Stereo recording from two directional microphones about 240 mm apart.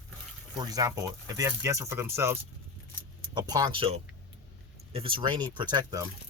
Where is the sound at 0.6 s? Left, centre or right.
Centre.